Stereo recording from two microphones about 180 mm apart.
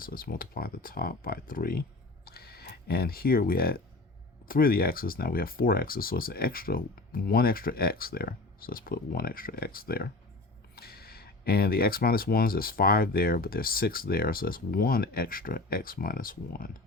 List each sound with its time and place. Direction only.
0.0 s speech: 55° left (ahead or behind)